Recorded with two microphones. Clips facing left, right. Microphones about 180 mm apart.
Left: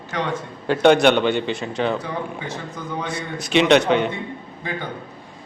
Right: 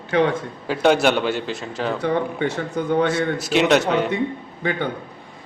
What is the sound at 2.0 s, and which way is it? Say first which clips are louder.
Speech: right 7 dB; 65° right (ahead or behind).